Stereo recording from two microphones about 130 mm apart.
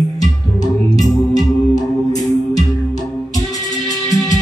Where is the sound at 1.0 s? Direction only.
30° left (ahead or behind).